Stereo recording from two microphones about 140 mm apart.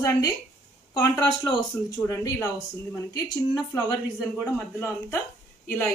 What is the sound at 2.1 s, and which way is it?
Speech, 25° left (ahead or behind).